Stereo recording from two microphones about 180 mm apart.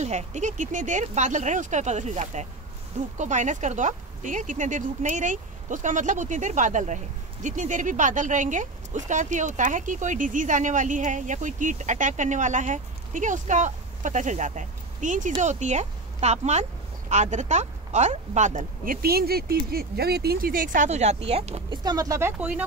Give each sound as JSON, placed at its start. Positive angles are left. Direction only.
{"t": 0.0, "sound": "speech", "side_deg": -40}
{"t": 21.8, "sound": "speech", "side_deg": -20}